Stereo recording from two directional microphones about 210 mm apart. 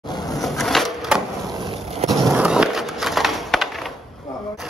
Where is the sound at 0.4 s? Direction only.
Centre (ahead or behind).